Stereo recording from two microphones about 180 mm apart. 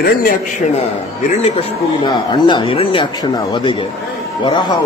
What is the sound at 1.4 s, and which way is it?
Speech, 30° left (ahead or behind).